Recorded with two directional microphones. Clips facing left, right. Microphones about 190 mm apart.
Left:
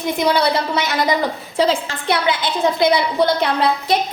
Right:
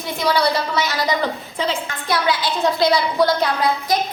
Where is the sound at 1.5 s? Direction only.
35° left (ahead or behind).